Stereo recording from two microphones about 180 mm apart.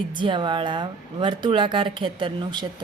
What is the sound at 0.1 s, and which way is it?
Speech, 25° right (ahead or behind).